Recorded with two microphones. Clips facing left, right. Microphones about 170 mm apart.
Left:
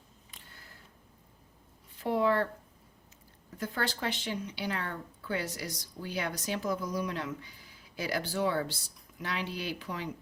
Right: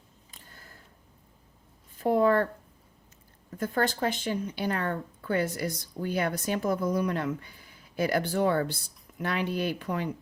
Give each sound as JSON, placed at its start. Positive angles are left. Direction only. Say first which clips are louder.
{"t": 0.3, "sound": "a sound", "louder": "right 3 dB", "side_deg": -45}
{"t": 2.0, "sound": "speech", "louder": "right 5 dB", "side_deg": -45}
{"t": 3.6, "sound": "speech", "louder": "right 6 dB", "side_deg": -45}